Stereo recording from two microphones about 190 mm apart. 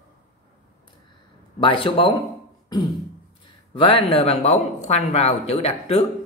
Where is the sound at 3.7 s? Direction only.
30° left (ahead or behind).